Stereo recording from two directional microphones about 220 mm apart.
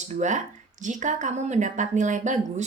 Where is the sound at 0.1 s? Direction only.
35° right (ahead or behind).